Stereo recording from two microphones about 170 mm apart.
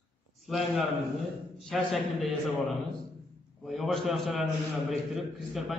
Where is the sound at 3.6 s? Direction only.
Centre (ahead or behind).